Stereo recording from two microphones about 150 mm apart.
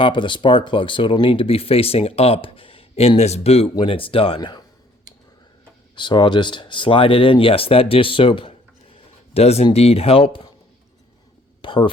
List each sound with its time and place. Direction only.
0.0 s speech: 35° left (ahead or behind)
6.0 s speech: 30° left (ahead or behind)
11.6 s a sound: 35° left (ahead or behind)